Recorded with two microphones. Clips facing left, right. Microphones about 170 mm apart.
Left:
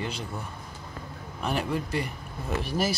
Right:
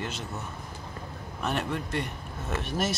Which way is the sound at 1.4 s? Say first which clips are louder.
Left 2 dB; centre (ahead or behind).